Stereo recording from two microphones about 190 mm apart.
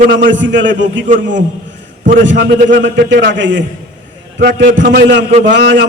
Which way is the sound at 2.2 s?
70° right (ahead or behind).